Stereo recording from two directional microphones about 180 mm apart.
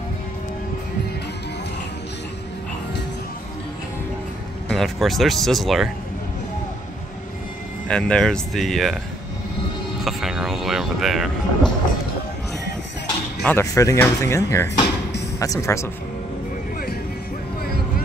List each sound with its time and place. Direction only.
4.6 s speech: centre (ahead or behind)
7.9 s speech: 5° left (ahead or behind)
10.0 s vehicle: centre (ahead or behind)
13.4 s speech: 10° left (ahead or behind)